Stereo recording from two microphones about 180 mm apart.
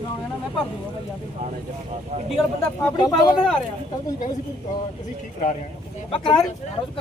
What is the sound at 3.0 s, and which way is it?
Speech, 20° left (ahead or behind).